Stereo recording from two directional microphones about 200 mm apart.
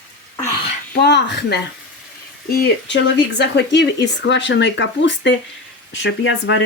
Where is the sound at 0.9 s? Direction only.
60° left (ahead or behind).